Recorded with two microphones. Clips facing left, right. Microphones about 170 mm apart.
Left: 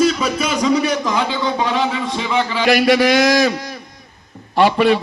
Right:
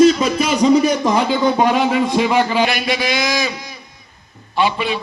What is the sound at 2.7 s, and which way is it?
A man's voice, 80° left.